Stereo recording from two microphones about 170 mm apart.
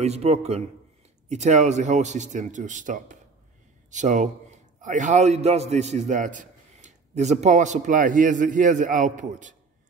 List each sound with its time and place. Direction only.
0.0 s a man's voice: 40° right (ahead or behind)